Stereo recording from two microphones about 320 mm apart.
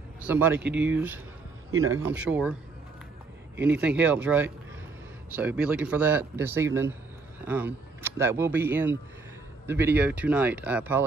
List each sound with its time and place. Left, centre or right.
0.3 s a man's voice: centre
1.7 s speech: right
2.0 s a man's voice: centre
3.6 s a man's voice: centre